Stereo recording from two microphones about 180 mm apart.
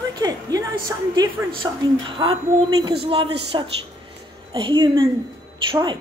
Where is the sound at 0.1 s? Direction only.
20° right (ahead or behind).